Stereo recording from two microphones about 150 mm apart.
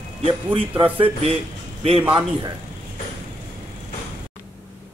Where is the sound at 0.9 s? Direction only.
35° right (ahead or behind).